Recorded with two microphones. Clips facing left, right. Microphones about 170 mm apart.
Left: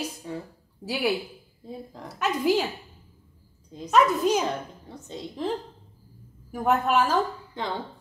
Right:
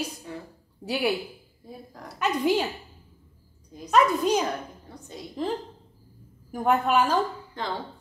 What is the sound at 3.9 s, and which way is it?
Speech, centre (ahead or behind).